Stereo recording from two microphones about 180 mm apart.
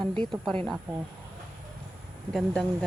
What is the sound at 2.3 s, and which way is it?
Speech, centre (ahead or behind).